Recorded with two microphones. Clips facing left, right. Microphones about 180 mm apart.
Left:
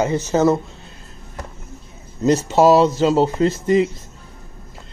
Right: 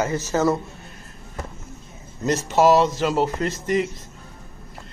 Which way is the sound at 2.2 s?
25° left (ahead or behind).